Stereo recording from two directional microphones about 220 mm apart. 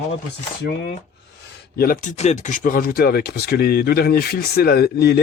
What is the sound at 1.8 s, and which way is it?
Speech, 35° left (ahead or behind).